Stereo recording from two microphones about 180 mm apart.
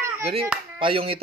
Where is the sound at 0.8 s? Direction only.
30° right (ahead or behind).